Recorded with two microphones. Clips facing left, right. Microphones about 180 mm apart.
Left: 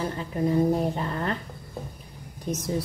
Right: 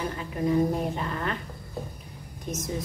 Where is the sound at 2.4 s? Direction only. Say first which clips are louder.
Left 4 dB; 35° left (ahead or behind).